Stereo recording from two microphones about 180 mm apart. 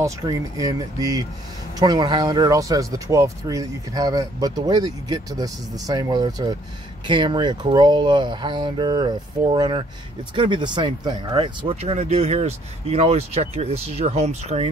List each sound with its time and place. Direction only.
0.0 s speech: 20° right (ahead or behind); by 14.7 s 35° right (ahead or behind)